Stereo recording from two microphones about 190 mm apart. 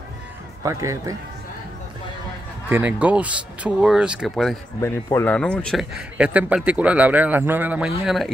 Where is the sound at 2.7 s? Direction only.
10° right (ahead or behind).